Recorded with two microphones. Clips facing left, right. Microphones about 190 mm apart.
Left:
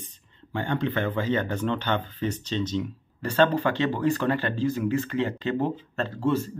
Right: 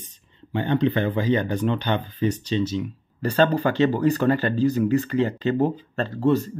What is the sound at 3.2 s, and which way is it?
Speech, 35° right (ahead or behind).